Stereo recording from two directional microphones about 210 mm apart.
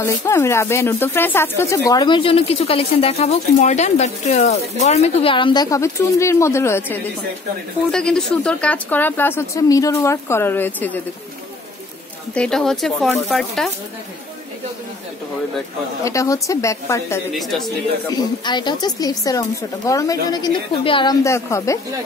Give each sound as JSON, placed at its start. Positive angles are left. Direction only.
{"t": 0.0, "sound": "speech", "side_deg": 10}
{"t": 12.4, "sound": "speech", "side_deg": 0}
{"t": 16.0, "sound": "speech", "side_deg": 15}
{"t": 17.3, "sound": "speech", "side_deg": 0}
{"t": 18.1, "sound": "speech", "side_deg": 20}